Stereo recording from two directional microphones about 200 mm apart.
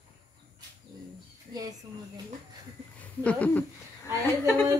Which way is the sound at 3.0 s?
5° left (ahead or behind).